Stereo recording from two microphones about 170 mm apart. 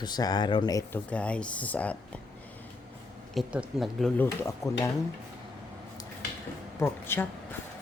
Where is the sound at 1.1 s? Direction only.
5° left (ahead or behind).